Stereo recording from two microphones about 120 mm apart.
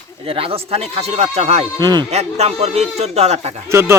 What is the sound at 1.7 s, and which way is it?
Speech, 35° right (ahead or behind).